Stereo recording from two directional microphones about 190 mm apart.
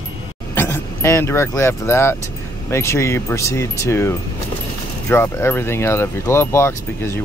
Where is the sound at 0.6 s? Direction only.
15° left (ahead or behind).